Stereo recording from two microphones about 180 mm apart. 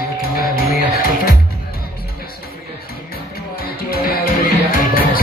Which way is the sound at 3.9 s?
55° left (ahead or behind).